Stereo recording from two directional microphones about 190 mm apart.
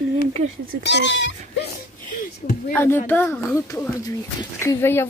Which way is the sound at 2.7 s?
10° left (ahead or behind).